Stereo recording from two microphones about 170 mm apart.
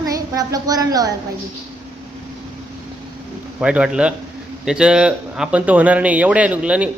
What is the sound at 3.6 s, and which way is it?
A man's voice, 5° right (ahead or behind).